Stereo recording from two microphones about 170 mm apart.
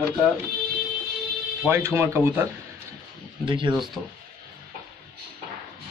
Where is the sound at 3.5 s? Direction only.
30° right (ahead or behind).